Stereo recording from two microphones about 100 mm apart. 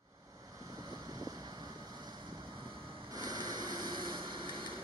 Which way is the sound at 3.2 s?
40° right (ahead or behind).